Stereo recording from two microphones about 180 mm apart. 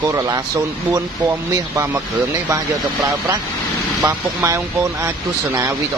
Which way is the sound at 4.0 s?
15° right (ahead or behind).